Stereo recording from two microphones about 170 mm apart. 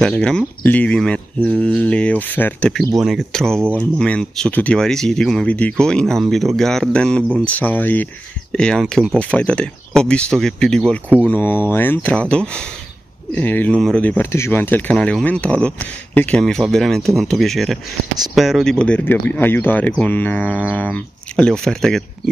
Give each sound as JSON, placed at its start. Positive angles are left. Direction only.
{"t": 0.0, "sound": "speech", "side_deg": 5}